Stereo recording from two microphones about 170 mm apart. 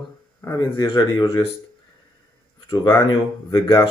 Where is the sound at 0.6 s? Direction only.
25° left (ahead or behind).